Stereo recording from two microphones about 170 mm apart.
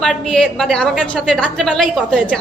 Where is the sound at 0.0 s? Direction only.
5° left (ahead or behind).